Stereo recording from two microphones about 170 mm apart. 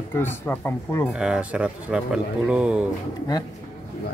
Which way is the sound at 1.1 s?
5° right (ahead or behind).